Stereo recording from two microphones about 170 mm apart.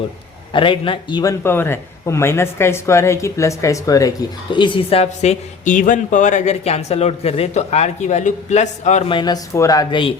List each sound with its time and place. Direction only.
0.5 s a man's voice: 30° left (ahead or behind)
9.1 s speech: 25° left (ahead or behind)